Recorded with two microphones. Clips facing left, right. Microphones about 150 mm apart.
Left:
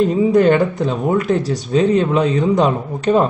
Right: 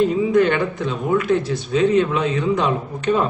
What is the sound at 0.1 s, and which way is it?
Speech, 35° left (ahead or behind).